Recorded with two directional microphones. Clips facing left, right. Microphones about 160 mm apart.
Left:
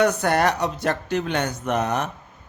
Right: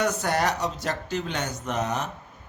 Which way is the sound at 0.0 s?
60° left (ahead or behind).